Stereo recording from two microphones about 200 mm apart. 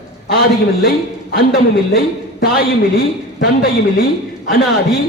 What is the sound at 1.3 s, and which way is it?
A man's voice, 50° left (ahead or behind).